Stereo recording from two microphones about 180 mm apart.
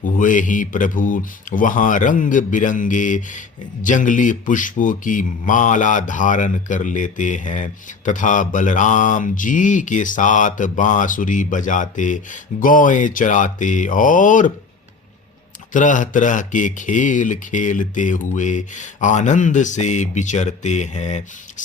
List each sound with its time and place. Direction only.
0.0 s speech: 45° left (ahead or behind)
15.7 s speech: 45° left (ahead or behind)